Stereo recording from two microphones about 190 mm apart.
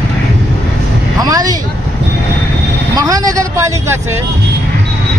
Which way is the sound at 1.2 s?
20° right (ahead or behind).